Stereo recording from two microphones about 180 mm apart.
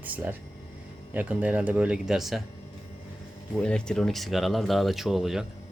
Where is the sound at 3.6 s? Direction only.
5° left (ahead or behind).